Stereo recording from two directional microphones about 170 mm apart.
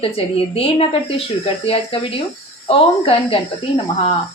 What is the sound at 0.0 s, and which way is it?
A woman's voice, 35° left (ahead or behind).